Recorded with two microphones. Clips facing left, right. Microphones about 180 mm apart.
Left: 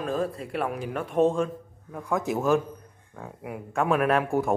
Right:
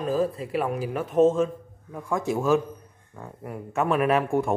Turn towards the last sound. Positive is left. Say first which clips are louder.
# right 1 dB
turn(degrees=0)  # may be behind; listen again after turning